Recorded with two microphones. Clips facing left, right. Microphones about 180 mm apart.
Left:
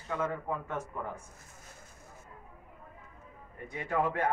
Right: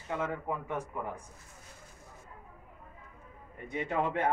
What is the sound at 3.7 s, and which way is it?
Speech, 20° right (ahead or behind).